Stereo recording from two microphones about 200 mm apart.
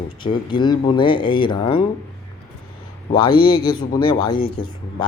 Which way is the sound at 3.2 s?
25° left (ahead or behind).